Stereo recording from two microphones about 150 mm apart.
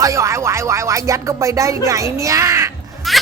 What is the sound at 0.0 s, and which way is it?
Music, 20° right (ahead or behind).